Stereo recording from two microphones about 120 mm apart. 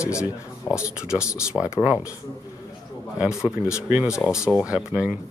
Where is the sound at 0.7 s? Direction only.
40° left (ahead or behind).